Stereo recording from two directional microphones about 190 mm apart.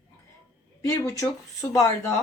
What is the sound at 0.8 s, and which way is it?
Speech, 15° left (ahead or behind).